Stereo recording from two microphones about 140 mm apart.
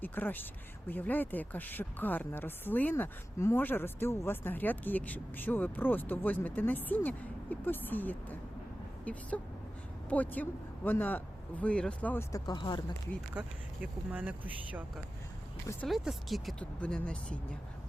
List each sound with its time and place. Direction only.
0.0 s speech: 15° left (ahead or behind)
12.3 s speech: 30° left (ahead or behind)
13.4 s speech: 10° right (ahead or behind)
15.9 s speech: centre (ahead or behind)